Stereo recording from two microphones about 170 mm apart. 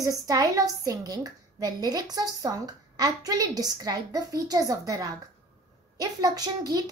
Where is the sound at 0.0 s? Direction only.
20° right (ahead or behind).